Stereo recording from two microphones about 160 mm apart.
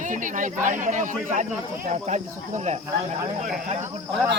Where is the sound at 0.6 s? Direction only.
50° right (ahead or behind).